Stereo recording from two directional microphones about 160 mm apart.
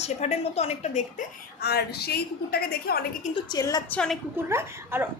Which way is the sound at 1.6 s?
90° left.